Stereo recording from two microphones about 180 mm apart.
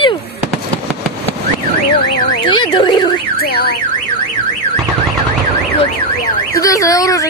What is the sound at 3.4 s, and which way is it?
Car alarm, 60° left (ahead or behind).